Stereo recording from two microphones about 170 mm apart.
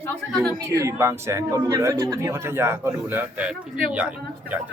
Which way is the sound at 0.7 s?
15° right (ahead or behind).